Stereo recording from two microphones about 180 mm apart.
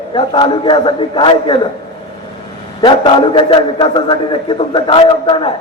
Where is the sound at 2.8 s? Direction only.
25° left (ahead or behind).